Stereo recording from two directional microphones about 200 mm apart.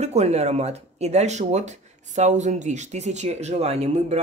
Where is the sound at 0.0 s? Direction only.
35° right (ahead or behind).